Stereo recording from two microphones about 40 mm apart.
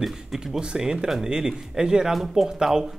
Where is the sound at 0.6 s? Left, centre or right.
Centre.